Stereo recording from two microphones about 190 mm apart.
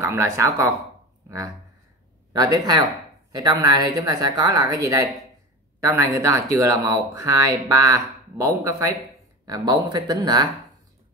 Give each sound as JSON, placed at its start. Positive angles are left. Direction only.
{"t": 0.0, "sound": "speech", "side_deg": -15}
{"t": 2.3, "sound": "a woman's voice", "side_deg": -20}